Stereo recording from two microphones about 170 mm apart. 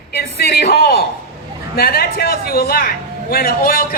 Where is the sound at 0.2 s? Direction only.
65° left (ahead or behind).